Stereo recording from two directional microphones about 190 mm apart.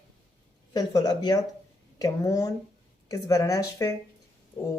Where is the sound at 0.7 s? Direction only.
20° left (ahead or behind).